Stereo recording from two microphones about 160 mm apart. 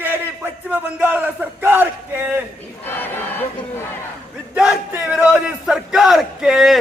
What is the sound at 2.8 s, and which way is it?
Crowd, 10° left (ahead or behind).